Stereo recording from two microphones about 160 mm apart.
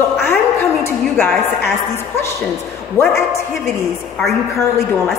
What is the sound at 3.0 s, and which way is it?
Speech, 20° left (ahead or behind).